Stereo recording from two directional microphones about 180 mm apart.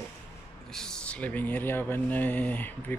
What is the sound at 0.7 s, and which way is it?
Speech, 5° left (ahead or behind).